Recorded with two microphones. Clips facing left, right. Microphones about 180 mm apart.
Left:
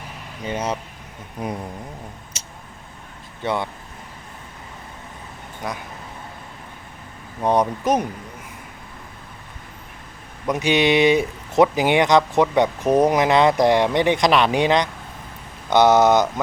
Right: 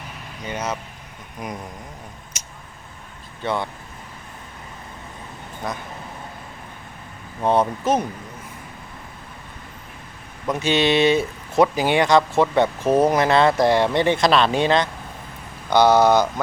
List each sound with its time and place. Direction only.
0.4 s speech: 30° left (ahead or behind)
3.4 s speech: 20° left (ahead or behind)
7.4 s speech: 15° left (ahead or behind)
10.5 s speech: 15° left (ahead or behind)